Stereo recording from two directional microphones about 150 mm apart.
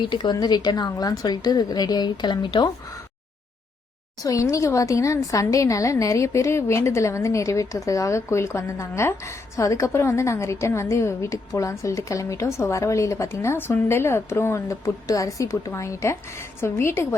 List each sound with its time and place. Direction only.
0.1 s a woman's voice: 30° left (ahead or behind)
4.2 s a woman's voice: 20° left (ahead or behind)